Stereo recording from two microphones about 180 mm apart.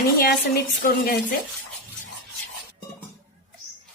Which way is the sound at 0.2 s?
60° left (ahead or behind).